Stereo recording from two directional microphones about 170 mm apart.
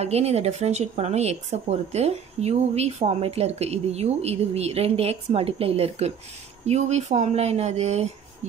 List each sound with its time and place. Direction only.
0.0 s speech: 40° right (ahead or behind)